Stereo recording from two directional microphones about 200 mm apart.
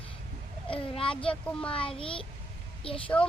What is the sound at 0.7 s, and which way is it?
Speech, 25° left (ahead or behind).